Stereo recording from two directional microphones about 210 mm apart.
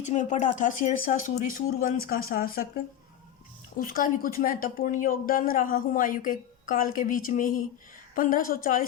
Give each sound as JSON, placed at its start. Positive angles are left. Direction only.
{"t": 0.1, "sound": "a woman's voice", "side_deg": 35}
{"t": 3.8, "sound": "a woman's voice", "side_deg": 40}